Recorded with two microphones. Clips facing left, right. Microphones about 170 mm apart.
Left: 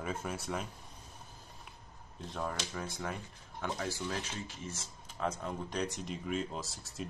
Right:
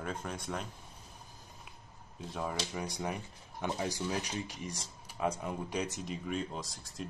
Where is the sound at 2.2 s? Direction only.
5° right (ahead or behind).